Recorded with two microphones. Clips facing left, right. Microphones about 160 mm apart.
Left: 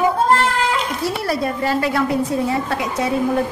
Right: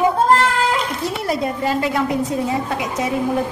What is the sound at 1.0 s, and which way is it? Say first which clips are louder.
A woman's voice: left 1 dB; 20° right (ahead or behind).